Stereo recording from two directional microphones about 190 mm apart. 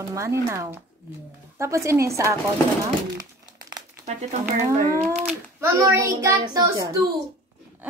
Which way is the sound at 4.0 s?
40° right (ahead or behind).